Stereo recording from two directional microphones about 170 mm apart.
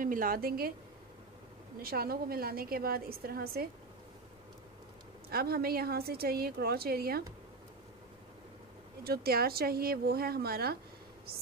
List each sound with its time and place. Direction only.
0.0 s a woman's voice: 55° right (ahead or behind)
1.8 s a woman's voice: 65° right (ahead or behind)
5.3 s a woman's voice: 65° right (ahead or behind)
9.0 s a woman's voice: 65° right (ahead or behind)